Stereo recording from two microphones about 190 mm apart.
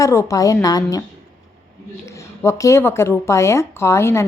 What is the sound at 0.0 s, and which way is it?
Speech, 15° left (ahead or behind).